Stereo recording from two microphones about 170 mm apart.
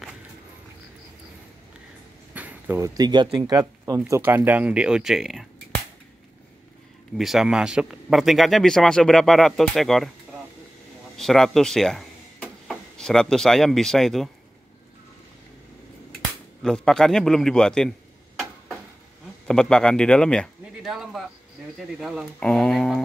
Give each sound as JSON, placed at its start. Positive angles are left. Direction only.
{"t": 2.3, "sound": "speech", "side_deg": -10}
{"t": 7.2, "sound": "speech", "side_deg": 0}
{"t": 11.1, "sound": "speech", "side_deg": 0}
{"t": 16.6, "sound": "a man's voice", "side_deg": 5}